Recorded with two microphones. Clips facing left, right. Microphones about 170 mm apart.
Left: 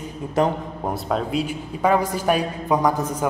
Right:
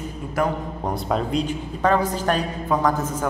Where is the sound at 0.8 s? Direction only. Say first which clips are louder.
Even; 5° left (ahead or behind).